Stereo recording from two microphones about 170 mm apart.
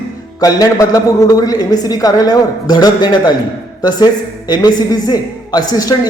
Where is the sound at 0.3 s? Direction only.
20° left (ahead or behind).